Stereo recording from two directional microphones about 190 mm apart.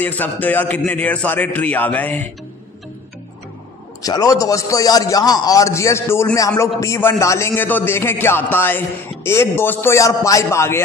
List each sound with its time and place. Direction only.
0.0 s a man's voice: 10° left (ahead or behind)
4.0 s a man's voice: 20° left (ahead or behind)